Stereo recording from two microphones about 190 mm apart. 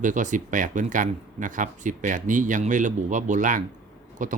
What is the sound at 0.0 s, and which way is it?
Speech, 40° right (ahead or behind).